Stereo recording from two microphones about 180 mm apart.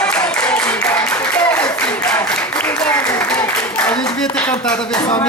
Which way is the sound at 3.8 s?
5° left (ahead or behind).